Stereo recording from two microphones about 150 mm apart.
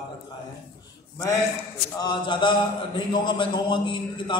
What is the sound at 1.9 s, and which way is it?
A man's voice, 30° left (ahead or behind).